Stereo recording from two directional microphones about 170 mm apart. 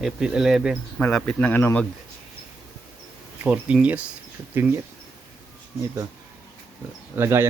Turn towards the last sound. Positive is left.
turn(degrees=-15)  # may be behind; listen again after turning